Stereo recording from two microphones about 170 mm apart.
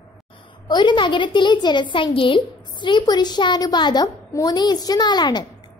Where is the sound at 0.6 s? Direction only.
25° left (ahead or behind).